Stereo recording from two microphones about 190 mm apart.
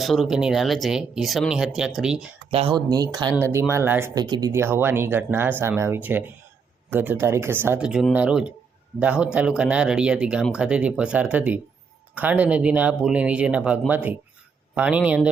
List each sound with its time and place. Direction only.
0.0 s speech: centre (ahead or behind)
2.5 s speech: 30° right (ahead or behind); by 15.3 s 5° right (ahead or behind)